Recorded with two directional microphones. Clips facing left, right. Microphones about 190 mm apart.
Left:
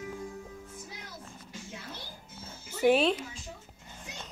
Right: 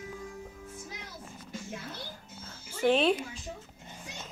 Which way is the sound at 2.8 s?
10° left (ahead or behind).